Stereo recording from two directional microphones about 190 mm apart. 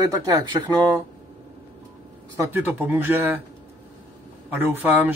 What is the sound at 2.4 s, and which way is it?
Speech, 10° right (ahead or behind).